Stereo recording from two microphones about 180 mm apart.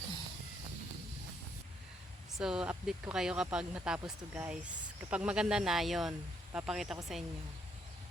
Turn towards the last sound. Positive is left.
turn(degrees=0)  # may be behind; listen again after turning